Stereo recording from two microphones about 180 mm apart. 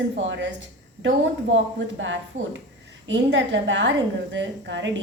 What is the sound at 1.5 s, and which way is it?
A woman's voice, 90° right.